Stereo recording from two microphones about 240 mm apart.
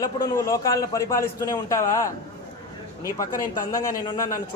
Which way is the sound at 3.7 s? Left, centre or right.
Centre.